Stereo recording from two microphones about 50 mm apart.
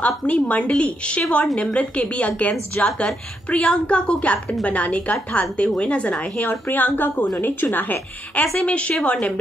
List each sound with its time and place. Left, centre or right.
0.0 s a woman's voice: left
8.5 s a woman's voice: left